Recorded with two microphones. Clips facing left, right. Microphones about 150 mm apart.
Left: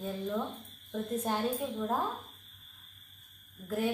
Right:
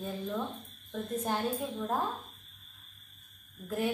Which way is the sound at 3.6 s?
5° left (ahead or behind).